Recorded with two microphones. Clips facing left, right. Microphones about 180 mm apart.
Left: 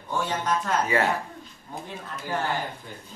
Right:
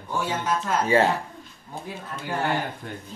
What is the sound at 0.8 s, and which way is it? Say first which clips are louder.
Speech: right 8 dB; 30° right (ahead or behind).